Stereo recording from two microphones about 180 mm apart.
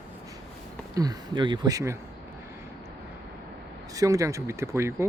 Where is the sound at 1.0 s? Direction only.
25° right (ahead or behind).